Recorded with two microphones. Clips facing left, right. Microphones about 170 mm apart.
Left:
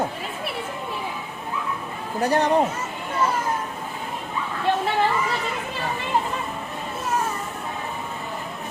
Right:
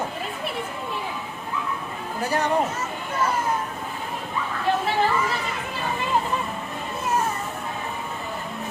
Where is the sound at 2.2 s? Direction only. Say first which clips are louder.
Left 4 dB; 35° left (ahead or behind).